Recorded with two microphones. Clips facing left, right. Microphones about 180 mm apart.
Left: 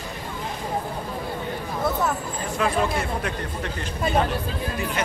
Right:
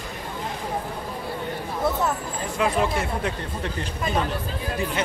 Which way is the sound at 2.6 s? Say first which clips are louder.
Right 1 dB; 20° right (ahead or behind).